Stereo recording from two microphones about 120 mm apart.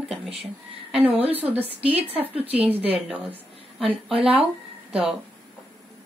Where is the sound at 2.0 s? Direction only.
55° right (ahead or behind).